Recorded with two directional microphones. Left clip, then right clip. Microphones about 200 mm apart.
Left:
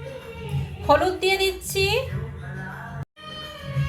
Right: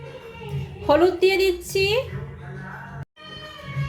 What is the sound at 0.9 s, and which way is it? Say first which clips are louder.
A woman's voice: right 2 dB; 40° right (ahead or behind).